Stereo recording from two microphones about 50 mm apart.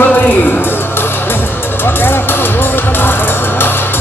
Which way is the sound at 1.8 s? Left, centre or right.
Left.